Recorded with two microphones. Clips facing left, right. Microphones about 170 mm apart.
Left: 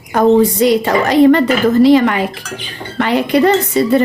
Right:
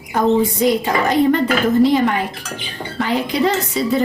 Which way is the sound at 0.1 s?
80° left.